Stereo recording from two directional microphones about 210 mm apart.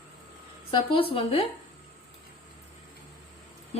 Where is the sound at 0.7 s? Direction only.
25° left (ahead or behind).